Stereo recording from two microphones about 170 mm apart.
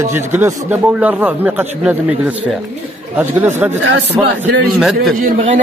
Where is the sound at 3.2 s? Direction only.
10° right (ahead or behind).